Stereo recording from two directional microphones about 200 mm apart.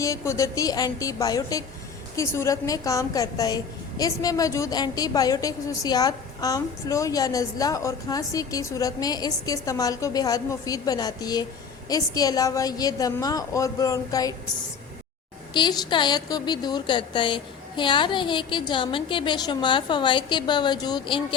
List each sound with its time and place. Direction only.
0.0 s a woman's voice: 15° left (ahead or behind)
15.5 s a woman's voice: 20° left (ahead or behind)